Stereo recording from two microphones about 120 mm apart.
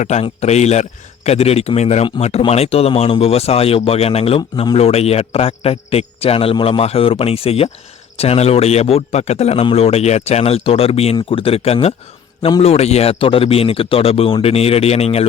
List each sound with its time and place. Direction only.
0.0 s speech: 70° left (ahead or behind)
12.4 s a man's voice: 40° left (ahead or behind)
12.6 s speech: 60° left (ahead or behind)